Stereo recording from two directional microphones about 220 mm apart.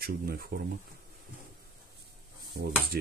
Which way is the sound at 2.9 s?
45° right (ahead or behind).